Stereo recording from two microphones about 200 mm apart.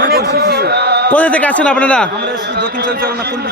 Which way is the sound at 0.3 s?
50° right (ahead or behind).